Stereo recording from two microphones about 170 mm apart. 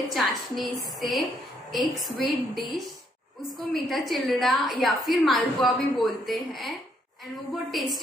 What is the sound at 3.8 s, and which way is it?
A woman's voice, centre (ahead or behind).